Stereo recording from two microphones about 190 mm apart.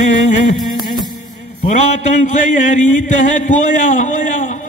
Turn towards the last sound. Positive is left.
turn(degrees=40)  # may be behind; listen again after turning